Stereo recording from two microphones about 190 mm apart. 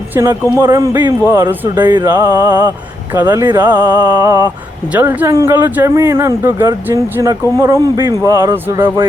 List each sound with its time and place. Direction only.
0.1 s a man's voice: 15° right (ahead or behind)
1.8 s a sound: 25° right (ahead or behind)
2.0 s speech: 15° right (ahead or behind)